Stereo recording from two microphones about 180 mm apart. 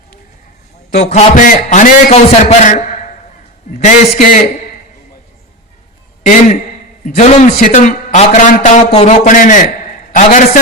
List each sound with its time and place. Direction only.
0.9 s a man's voice: 40° left (ahead or behind)
7.0 s a man's voice: 45° left (ahead or behind)